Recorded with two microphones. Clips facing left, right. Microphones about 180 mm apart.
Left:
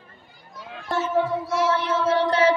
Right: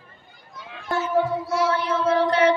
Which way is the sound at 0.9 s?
25° left (ahead or behind).